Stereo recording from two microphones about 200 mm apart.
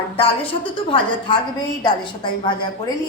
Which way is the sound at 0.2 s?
25° left (ahead or behind).